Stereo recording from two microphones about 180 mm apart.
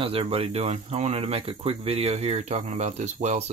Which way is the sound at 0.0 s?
30° right (ahead or behind).